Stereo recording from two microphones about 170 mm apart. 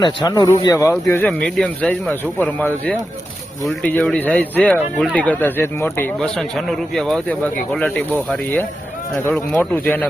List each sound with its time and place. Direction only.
0.0 s speech: 25° left (ahead or behind); by 8.0 s 10° left (ahead or behind)
9.3 s speech: 10° left (ahead or behind)